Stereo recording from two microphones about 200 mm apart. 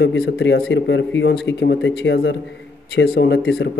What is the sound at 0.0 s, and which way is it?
A man's voice, 65° left (ahead or behind).